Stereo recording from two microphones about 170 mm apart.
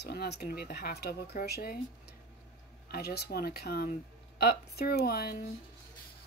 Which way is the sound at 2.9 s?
70° left (ahead or behind).